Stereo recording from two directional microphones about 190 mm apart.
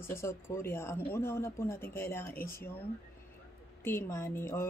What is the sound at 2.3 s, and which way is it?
Speech, 50° left (ahead or behind).